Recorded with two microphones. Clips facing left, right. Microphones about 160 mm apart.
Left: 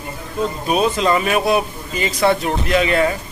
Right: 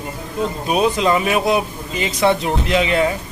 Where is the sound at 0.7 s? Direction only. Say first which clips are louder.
Even; 15° right (ahead or behind).